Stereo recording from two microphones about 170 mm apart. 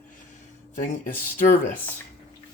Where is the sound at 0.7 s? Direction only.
50° left (ahead or behind).